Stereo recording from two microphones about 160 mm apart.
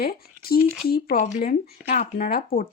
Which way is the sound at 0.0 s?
70° left (ahead or behind).